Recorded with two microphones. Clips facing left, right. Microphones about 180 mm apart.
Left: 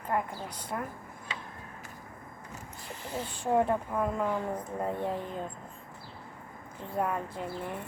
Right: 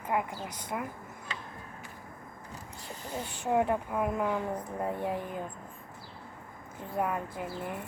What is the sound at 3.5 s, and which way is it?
A woman's voice, 10° right (ahead or behind).